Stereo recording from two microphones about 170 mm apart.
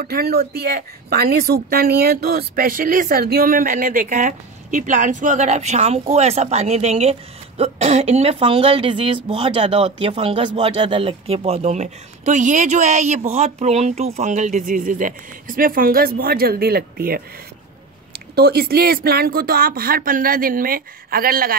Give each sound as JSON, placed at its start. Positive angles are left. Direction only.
{"t": 0.0, "sound": "a woman's voice", "side_deg": -65}
{"t": 18.3, "sound": "speech", "side_deg": -65}